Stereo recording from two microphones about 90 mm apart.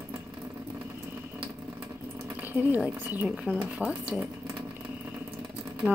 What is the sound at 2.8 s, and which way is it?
Speech, 20° right (ahead or behind).